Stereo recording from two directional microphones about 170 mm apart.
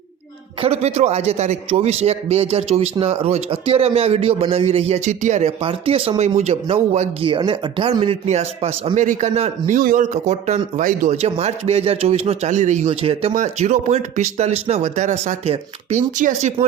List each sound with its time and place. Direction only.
0.6 s a man's voice: 40° right (ahead or behind)